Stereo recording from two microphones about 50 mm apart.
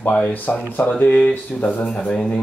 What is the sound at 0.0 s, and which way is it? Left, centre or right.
Speech, left.